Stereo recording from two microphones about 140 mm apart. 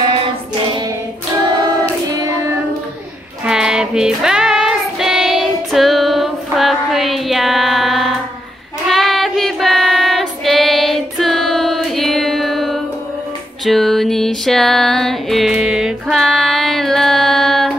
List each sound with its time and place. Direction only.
2.0 s child singing: 25° right (ahead or behind)
3.4 s music: 5° right (ahead or behind)
8.8 s child singing: centre (ahead or behind)
13.7 s music: centre (ahead or behind)